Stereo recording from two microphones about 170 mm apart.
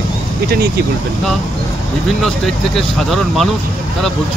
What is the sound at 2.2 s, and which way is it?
Speech, centre (ahead or behind).